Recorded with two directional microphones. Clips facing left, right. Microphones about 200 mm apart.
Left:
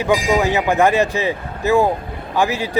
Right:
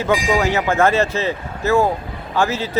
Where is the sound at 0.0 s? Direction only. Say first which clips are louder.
Left 1 dB; 15° left (ahead or behind).